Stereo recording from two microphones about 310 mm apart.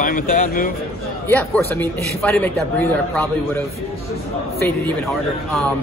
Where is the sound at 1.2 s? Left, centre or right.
Centre.